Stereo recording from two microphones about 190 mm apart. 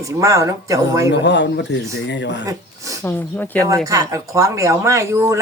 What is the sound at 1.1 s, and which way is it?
Speech, 65° left (ahead or behind).